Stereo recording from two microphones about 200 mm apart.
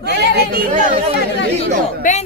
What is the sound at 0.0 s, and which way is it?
Chatter, 55° right (ahead or behind).